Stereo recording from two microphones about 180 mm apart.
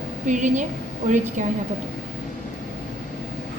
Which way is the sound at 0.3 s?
45° right (ahead or behind).